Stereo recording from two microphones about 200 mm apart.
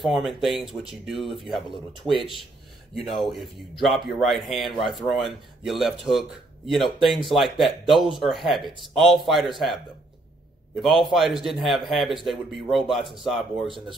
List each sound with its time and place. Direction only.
0.0 s speech: centre (ahead or behind)
3.1 s speech: centre (ahead or behind)
10.8 s speech: centre (ahead or behind)
13.7 s speech: 25° right (ahead or behind)